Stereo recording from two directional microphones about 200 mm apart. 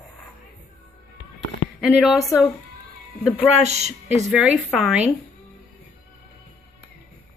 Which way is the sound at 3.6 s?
35° right (ahead or behind).